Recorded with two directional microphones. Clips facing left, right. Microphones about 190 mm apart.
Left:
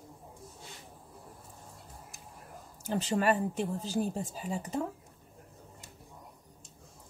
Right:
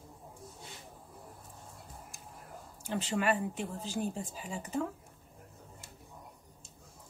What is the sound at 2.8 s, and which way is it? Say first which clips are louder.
Speech: left 3 dB; 40° left (ahead or behind).